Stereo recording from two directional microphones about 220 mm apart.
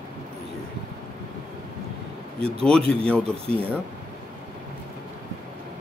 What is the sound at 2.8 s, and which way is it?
Speech, 25° right (ahead or behind).